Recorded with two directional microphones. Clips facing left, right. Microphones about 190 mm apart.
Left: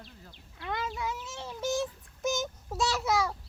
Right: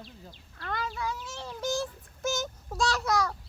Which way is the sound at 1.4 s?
5° left (ahead or behind).